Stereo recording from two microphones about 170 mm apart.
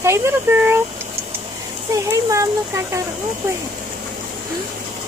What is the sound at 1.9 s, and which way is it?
Speech, 20° right (ahead or behind).